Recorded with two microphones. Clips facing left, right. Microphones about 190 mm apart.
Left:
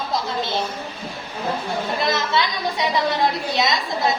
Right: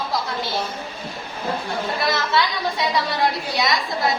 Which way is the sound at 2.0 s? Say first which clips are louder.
Right 1 dB; 20° left (ahead or behind).